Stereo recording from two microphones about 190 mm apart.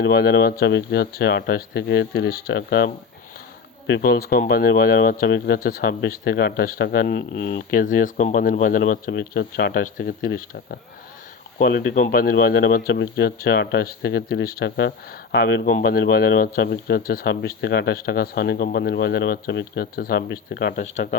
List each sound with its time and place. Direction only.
0.0 s speech: 55° left (ahead or behind)
0.6 s speech: 65° left (ahead or behind)